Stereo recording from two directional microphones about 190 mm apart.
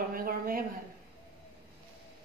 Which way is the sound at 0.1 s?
50° right (ahead or behind).